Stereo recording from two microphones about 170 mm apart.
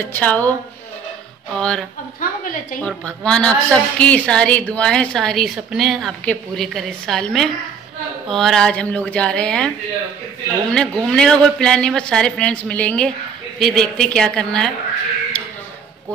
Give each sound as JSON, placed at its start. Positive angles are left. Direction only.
{"t": 0.1, "sound": "a woman's voice", "side_deg": 10}
{"t": 1.6, "sound": "a woman's voice", "side_deg": 5}
{"t": 2.1, "sound": "a woman's voice", "side_deg": 55}
{"t": 2.8, "sound": "a woman's voice", "side_deg": 5}
{"t": 10.7, "sound": "a woman's voice", "side_deg": 5}
{"t": 15.3, "sound": "a sound", "side_deg": 5}